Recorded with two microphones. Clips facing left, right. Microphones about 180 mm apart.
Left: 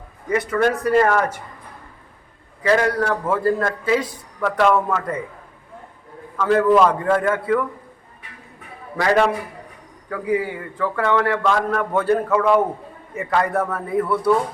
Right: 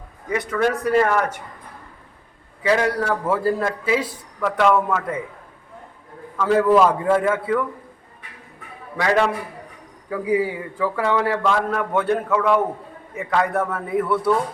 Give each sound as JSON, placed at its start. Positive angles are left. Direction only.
{"t": 0.3, "sound": "a man's voice", "side_deg": 0}
{"t": 2.6, "sound": "a man's voice", "side_deg": -5}
{"t": 6.3, "sound": "speech", "side_deg": -5}
{"t": 10.1, "sound": "a man's voice", "side_deg": -10}